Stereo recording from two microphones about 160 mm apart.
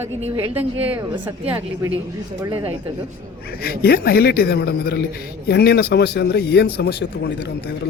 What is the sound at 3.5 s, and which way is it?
A man's voice, 75° left (ahead or behind).